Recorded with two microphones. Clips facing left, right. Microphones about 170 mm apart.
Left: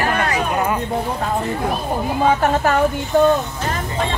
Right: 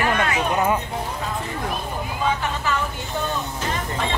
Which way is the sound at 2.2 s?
50° left (ahead or behind).